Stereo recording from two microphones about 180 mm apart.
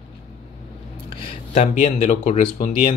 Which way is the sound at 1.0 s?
30° left (ahead or behind).